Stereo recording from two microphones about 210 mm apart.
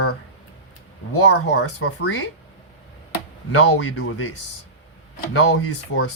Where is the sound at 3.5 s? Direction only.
75° left (ahead or behind).